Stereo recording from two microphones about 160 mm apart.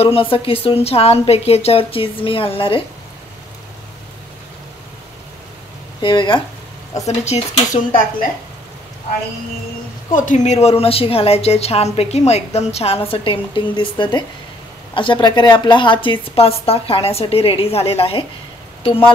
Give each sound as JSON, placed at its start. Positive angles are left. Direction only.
{"t": 0.0, "sound": "a woman's voice", "side_deg": 35}
{"t": 5.9, "sound": "speech", "side_deg": 30}
{"t": 7.1, "sound": "speech", "side_deg": 40}
{"t": 10.1, "sound": "a woman's voice", "side_deg": 50}